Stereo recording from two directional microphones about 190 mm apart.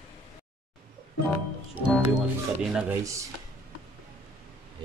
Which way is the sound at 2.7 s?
15° right (ahead or behind).